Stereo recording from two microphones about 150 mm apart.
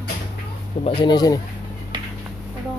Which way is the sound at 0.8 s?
30° left (ahead or behind).